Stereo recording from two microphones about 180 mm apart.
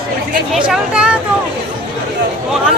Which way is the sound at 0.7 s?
5° right (ahead or behind).